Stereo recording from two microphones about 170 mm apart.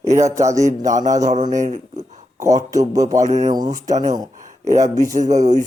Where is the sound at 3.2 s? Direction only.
45° right (ahead or behind).